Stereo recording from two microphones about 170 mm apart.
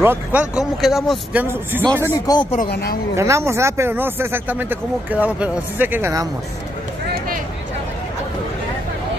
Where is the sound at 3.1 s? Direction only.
15° right (ahead or behind).